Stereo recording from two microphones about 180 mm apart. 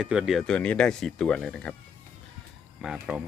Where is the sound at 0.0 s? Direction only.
5° right (ahead or behind).